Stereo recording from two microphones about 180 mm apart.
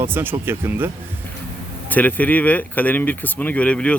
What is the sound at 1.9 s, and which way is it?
Speech, 10° left (ahead or behind).